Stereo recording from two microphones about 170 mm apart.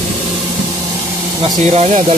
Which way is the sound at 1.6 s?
40° right (ahead or behind).